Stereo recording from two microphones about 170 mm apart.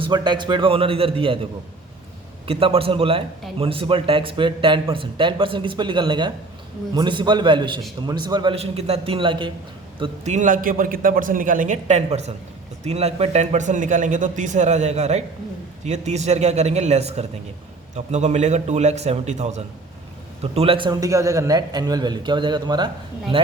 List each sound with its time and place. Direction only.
0.0 s a man's voice: 25° right (ahead or behind)
2.5 s a man's voice: 35° right (ahead or behind)
10.2 s a man's voice: 45° right (ahead or behind)